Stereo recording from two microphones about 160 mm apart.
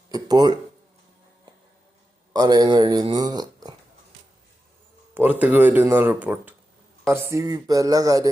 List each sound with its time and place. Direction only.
0.1 s speech: 25° right (ahead or behind)
2.3 s speech: 25° right (ahead or behind)
5.1 s speech: 10° right (ahead or behind)